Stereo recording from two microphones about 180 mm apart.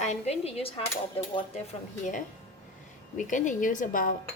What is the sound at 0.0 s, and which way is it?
Speech, 40° left (ahead or behind).